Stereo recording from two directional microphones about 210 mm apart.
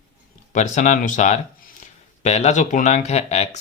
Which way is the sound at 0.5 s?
35° left (ahead or behind).